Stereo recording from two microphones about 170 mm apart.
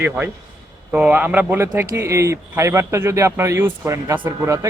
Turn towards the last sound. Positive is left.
turn(degrees=-15)  # may be behind; listen again after turning